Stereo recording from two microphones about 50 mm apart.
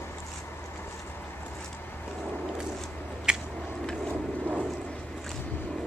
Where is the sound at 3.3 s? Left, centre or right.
Centre.